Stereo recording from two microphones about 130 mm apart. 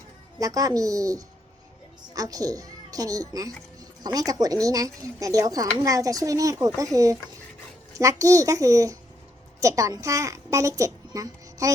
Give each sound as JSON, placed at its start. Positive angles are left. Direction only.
{"t": 0.3, "sound": "a woman's voice", "side_deg": -25}